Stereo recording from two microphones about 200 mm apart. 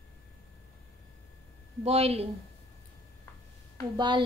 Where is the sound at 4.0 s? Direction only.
25° right (ahead or behind).